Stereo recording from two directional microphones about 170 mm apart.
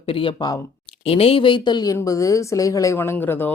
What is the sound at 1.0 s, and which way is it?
A woman's voice, 35° left (ahead or behind).